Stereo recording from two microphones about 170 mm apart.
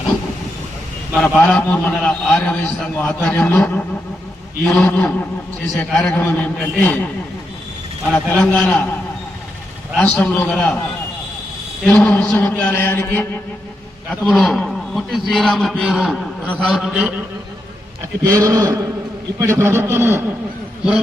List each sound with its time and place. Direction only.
1.1 s a man's voice: 5° left (ahead or behind)
8.1 s a man's voice: 5° left (ahead or behind)
10.0 s a man's voice: 10° left (ahead or behind)
11.9 s a man's voice: 10° left (ahead or behind)
14.1 s a man's voice: 5° left (ahead or behind)
18.2 s a man's voice: 20° right (ahead or behind)